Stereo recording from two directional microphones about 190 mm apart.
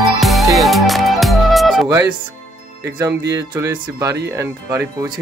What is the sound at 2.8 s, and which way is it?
Speech, 15° right (ahead or behind).